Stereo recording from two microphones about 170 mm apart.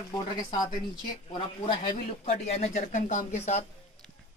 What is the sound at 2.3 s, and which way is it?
Speech, 40° left (ahead or behind).